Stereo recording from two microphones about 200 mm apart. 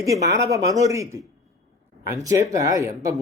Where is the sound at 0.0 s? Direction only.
15° right (ahead or behind).